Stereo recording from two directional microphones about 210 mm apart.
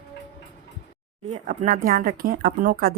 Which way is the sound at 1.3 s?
40° right (ahead or behind).